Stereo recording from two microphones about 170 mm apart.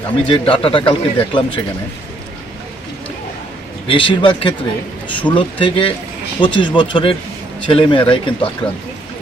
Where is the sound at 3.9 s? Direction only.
30° left (ahead or behind).